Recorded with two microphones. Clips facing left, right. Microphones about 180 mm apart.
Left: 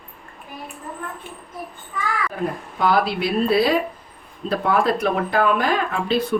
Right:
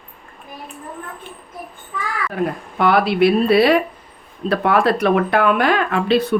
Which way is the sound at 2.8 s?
65° right (ahead or behind).